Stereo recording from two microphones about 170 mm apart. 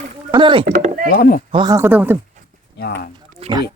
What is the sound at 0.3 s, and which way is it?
Speech, 25° right (ahead or behind).